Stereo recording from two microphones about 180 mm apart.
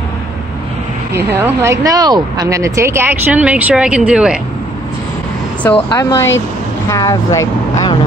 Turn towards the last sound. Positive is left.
turn(degrees=20)  # may be behind; listen again after turning